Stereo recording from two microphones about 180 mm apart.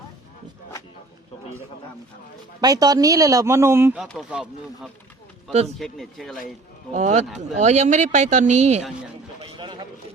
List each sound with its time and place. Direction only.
2.6 s speech: 20° right (ahead or behind)
4.0 s speech: centre (ahead or behind)
6.9 s speech: 40° right (ahead or behind)
9.4 s a sound: 25° right (ahead or behind)